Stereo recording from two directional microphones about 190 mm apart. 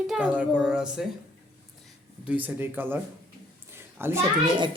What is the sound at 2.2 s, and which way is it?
Speech, 10° right (ahead or behind).